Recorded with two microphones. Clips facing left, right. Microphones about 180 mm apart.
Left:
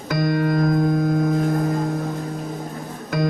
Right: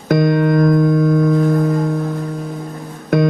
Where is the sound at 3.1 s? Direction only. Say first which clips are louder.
Right 8 dB; 60° right (ahead or behind).